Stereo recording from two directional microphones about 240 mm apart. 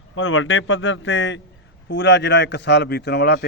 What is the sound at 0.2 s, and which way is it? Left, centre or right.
A man's voice, left.